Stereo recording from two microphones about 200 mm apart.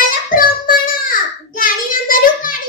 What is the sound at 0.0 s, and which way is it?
Child singing, 45° left (ahead or behind).